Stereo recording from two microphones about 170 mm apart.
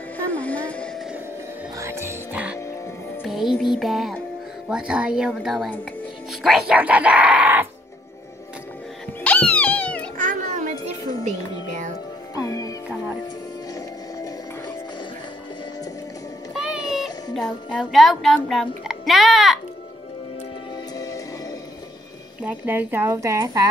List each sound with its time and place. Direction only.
0.2 s a sound: 10° left (ahead or behind)
1.8 s music: 15° right (ahead or behind)
3.8 s speech: centre (ahead or behind)
9.2 s music: 5° left (ahead or behind)
10.1 s children playing: 50° right (ahead or behind)
11.2 s music: 45° right (ahead or behind)
12.4 s music: 20° left (ahead or behind)
13.7 s music: 20° left (ahead or behind)
16.5 s a sound: 5° right (ahead or behind)
17.4 s a child's voice: centre (ahead or behind)
20.7 s music: 20° left (ahead or behind)
22.4 s speech: 10° right (ahead or behind)